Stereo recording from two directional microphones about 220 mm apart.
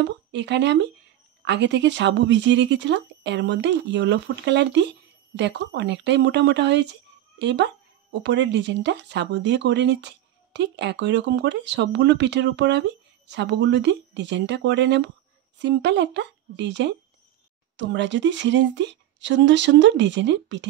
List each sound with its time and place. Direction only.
0.3 s a woman's voice: 55° right (ahead or behind)